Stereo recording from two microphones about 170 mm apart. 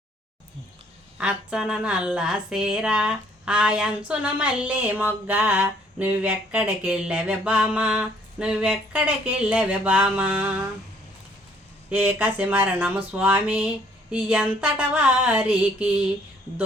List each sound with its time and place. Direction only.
1.2 s speech: 5° right (ahead or behind)
11.9 s speech: 10° right (ahead or behind)